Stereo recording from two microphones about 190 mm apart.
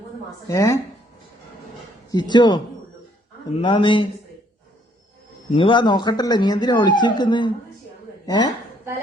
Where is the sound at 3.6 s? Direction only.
25° left (ahead or behind).